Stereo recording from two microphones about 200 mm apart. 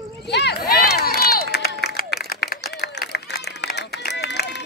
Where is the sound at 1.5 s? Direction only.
55° left (ahead or behind).